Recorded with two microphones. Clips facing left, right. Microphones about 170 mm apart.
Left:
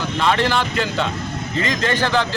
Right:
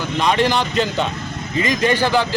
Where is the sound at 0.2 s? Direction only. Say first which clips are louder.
Right 1 dB; 15° right (ahead or behind).